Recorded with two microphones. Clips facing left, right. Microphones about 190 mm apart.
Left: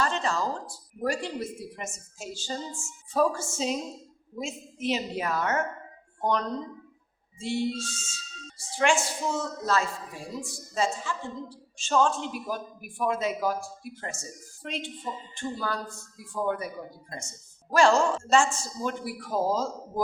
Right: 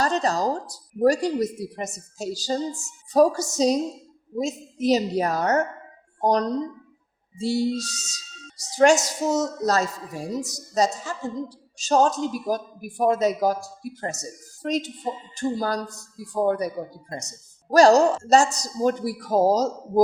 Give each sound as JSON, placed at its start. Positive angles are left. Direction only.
{"t": 0.0, "sound": "a woman's voice", "side_deg": -40}